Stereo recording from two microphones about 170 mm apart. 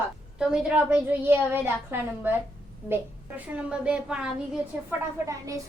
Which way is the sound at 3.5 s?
5° right (ahead or behind).